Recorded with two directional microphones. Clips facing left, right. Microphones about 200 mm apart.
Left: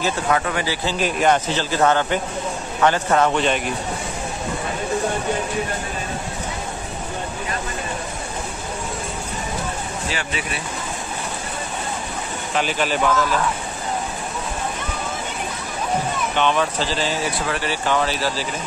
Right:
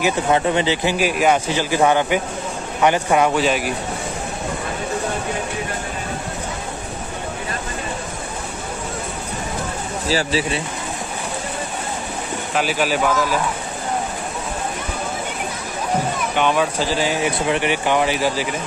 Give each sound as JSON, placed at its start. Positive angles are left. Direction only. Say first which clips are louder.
{"t": 0.3, "sound": "speech", "louder": "right 5 dB", "side_deg": -25}
{"t": 0.9, "sound": "speech", "louder": "left 1 dB", "side_deg": -5}
{"t": 10.0, "sound": "speech", "louder": "right 10 dB", "side_deg": -35}
{"t": 12.5, "sound": "speech", "louder": "right 1 dB", "side_deg": -5}
{"t": 16.3, "sound": "speech", "louder": "right 2 dB", "side_deg": -10}